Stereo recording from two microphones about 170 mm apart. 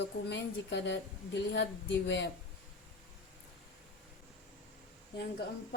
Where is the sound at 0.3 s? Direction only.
90° left.